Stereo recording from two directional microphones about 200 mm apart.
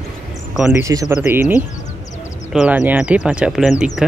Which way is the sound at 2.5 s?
5° right (ahead or behind).